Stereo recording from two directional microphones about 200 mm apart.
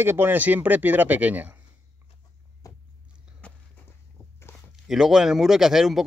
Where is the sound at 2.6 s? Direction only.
15° left (ahead or behind).